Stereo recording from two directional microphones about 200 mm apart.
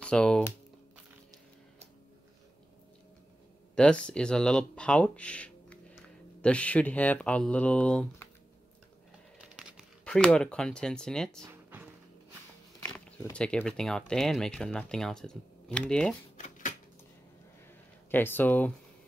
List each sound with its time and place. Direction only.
0.0 s speech: 5° left (ahead or behind)
3.7 s speech: 5° left (ahead or behind)
9.6 s speech: 5° right (ahead or behind)
11.4 s music: 10° right (ahead or behind)
12.8 s speech: 5° left (ahead or behind)
16.3 s typewriter: 40° left (ahead or behind)
18.1 s speech: 10° left (ahead or behind)